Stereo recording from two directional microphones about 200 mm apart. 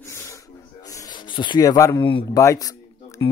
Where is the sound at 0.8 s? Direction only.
15° left (ahead or behind).